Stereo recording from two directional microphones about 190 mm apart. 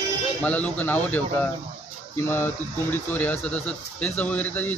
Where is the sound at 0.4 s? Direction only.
10° left (ahead or behind).